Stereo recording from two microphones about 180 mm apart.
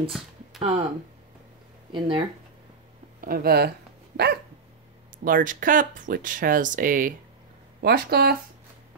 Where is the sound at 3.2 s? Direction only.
55° right (ahead or behind).